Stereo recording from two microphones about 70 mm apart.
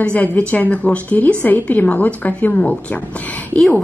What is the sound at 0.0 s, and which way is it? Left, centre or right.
A woman's voice, centre.